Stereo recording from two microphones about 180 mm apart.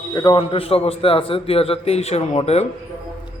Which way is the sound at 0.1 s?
25° left (ahead or behind).